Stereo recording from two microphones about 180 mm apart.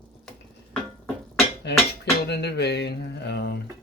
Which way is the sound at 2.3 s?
65° left (ahead or behind).